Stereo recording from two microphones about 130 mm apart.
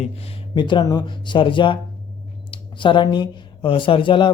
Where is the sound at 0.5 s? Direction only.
35° left (ahead or behind).